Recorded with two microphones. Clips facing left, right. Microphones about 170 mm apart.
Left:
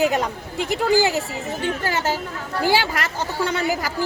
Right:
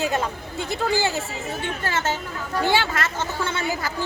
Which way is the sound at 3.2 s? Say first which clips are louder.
Left 3 dB; 35° left (ahead or behind).